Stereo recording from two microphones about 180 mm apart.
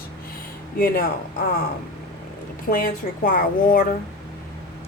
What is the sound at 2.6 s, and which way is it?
A woman's voice, 55° left (ahead or behind).